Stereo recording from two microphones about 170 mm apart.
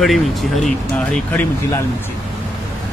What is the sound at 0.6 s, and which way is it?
Speech, 5° left (ahead or behind).